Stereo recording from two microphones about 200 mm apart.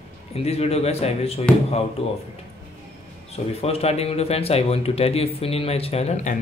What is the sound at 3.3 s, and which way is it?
Speech, 30° left (ahead or behind).